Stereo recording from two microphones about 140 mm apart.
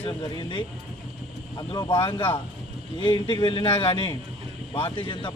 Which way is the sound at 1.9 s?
40° left (ahead or behind).